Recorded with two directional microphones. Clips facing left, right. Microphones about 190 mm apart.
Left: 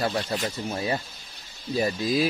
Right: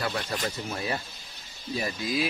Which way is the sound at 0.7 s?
25° left (ahead or behind).